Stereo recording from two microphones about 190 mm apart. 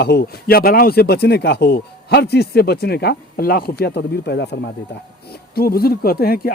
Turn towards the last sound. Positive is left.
turn(degrees=50)  # may be behind; listen again after turning